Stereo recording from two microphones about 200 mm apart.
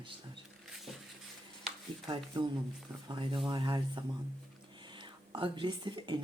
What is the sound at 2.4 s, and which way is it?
Speech, 20° right (ahead or behind).